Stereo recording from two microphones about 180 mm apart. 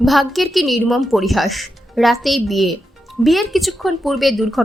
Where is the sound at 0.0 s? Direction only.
Centre (ahead or behind).